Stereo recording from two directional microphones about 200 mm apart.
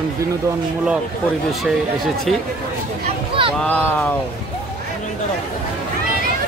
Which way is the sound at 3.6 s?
5° left (ahead or behind).